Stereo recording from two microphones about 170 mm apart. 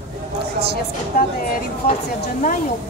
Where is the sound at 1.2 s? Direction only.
60° left (ahead or behind).